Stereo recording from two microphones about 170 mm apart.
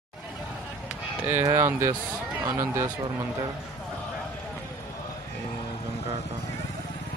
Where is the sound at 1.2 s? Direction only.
15° right (ahead or behind).